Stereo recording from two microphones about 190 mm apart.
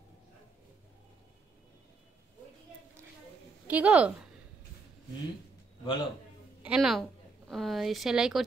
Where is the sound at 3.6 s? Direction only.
5° right (ahead or behind).